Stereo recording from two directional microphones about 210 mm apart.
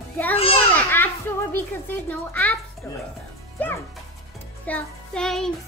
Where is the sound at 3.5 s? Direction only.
10° left (ahead or behind).